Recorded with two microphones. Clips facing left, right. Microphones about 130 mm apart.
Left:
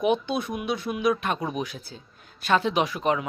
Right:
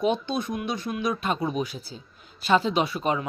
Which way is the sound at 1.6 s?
55° left (ahead or behind).